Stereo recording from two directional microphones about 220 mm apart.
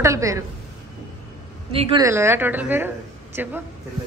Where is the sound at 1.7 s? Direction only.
25° right (ahead or behind).